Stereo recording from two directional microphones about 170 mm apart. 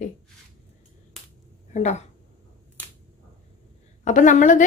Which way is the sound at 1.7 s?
45° left (ahead or behind).